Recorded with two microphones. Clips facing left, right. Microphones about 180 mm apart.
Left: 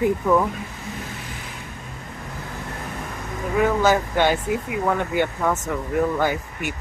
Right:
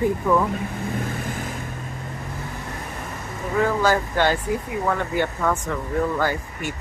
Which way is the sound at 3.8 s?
20° left (ahead or behind).